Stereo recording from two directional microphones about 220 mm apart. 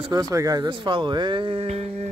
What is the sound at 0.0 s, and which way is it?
Speech, 15° right (ahead or behind).